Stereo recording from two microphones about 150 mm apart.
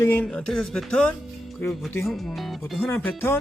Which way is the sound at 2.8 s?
15° left (ahead or behind).